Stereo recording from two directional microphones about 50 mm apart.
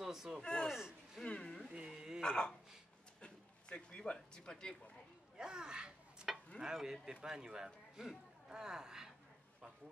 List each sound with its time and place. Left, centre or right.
0.0 s a sound: centre
0.4 s speech: centre
0.7 s speech: centre
1.2 s speech: centre
1.7 s speech: centre
2.2 s speech: centre
3.2 s a sound: left
4.0 s speech: centre
5.4 s a sound: centre
6.2 s stir: centre
6.6 s speech: centre